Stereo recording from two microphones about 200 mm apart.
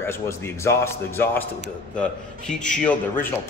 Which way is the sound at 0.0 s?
10° left (ahead or behind).